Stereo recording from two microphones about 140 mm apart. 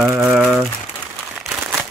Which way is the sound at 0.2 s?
5° right (ahead or behind).